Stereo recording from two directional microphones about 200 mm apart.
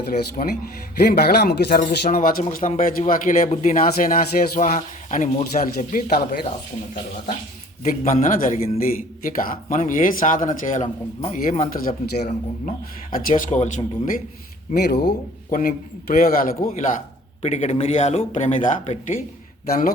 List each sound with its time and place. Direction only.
0.0 s speech: 50° left (ahead or behind)
7.9 s speech: 40° left (ahead or behind)
14.7 s speech: 55° left (ahead or behind)